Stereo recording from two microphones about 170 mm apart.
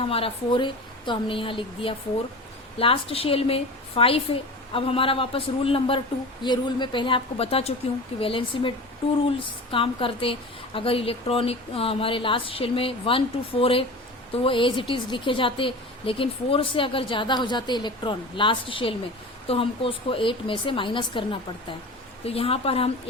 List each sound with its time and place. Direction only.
0.1 s a woman's voice: 35° left (ahead or behind)
22.3 s a woman's voice: 35° left (ahead or behind)